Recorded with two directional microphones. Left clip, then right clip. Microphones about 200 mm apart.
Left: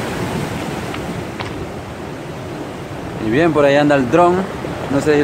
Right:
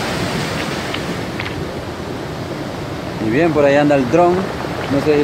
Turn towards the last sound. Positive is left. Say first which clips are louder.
# even
turn(degrees=15)  # may be behind; listen again after turning